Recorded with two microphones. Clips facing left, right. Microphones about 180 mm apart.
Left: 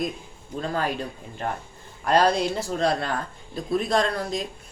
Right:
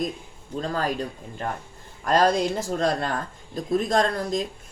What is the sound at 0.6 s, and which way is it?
Speech, 40° right (ahead or behind).